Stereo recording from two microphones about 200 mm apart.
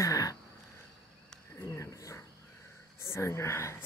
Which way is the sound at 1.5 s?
15° left (ahead or behind).